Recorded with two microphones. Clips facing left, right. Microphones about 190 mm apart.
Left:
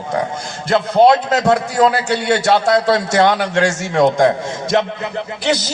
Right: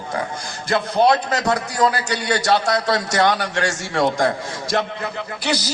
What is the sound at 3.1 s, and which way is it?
Speech, 55° left (ahead or behind).